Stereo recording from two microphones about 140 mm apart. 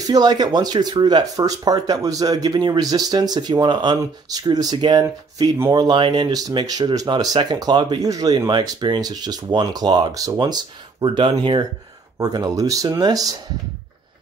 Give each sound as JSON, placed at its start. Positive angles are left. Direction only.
{"t": 0.0, "sound": "speech", "side_deg": -30}